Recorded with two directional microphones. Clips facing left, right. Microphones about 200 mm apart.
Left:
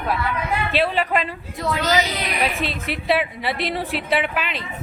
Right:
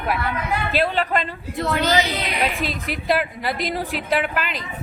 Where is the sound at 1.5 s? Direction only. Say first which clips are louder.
Right 2 dB; 60° right (ahead or behind).